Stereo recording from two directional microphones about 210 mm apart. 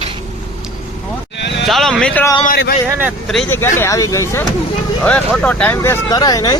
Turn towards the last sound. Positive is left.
turn(degrees=20)  # may be behind; listen again after turning